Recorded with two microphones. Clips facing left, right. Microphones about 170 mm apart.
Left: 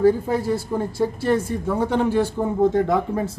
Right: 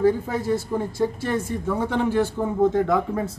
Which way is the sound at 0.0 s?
30° left (ahead or behind).